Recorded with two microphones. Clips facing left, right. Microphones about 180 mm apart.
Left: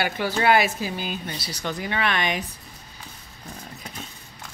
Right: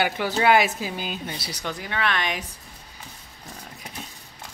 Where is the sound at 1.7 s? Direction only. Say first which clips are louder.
Left 2 dB; centre (ahead or behind).